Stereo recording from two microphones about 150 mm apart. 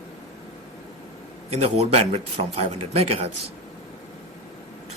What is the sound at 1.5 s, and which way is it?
Speech, 45° right (ahead or behind).